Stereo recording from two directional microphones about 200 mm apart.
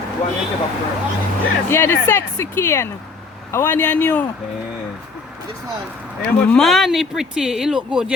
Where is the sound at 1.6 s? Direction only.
10° left (ahead or behind).